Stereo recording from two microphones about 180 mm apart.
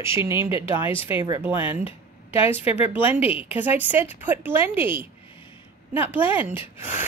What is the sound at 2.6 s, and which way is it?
Speech, 35° left (ahead or behind).